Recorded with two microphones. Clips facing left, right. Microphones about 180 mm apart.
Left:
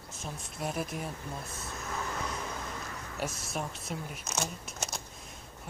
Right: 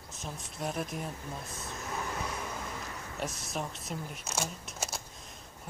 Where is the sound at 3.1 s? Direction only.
Centre (ahead or behind).